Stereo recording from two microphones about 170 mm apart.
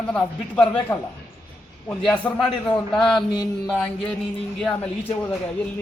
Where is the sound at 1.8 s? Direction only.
5° left (ahead or behind).